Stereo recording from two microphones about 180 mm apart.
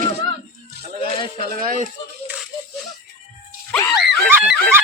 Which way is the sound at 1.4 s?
55° right (ahead or behind).